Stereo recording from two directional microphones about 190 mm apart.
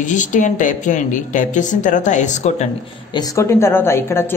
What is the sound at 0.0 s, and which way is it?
Speech, 40° left (ahead or behind).